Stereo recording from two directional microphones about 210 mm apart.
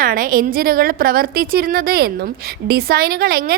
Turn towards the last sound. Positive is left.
turn(degrees=-45)  # may be behind; listen again after turning